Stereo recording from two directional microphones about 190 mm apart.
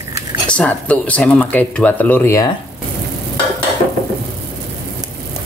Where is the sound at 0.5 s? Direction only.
5° left (ahead or behind).